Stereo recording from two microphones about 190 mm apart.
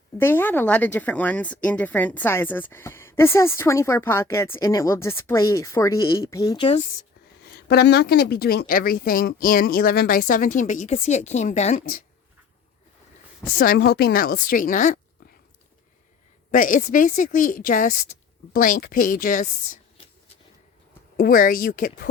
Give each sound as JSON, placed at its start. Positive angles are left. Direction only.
{"t": 0.2, "sound": "speech", "side_deg": 10}
{"t": 7.5, "sound": "speech", "side_deg": 60}
{"t": 13.6, "sound": "speech", "side_deg": 60}
{"t": 16.5, "sound": "speech", "side_deg": 45}
{"t": 21.2, "sound": "speech", "side_deg": 45}